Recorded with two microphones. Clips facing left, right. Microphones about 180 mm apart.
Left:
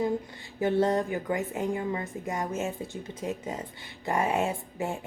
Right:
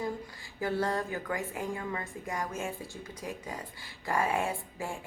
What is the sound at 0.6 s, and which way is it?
A woman's voice, 20° left (ahead or behind).